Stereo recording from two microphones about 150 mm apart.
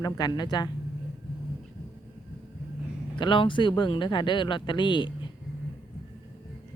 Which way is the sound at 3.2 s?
35° left (ahead or behind).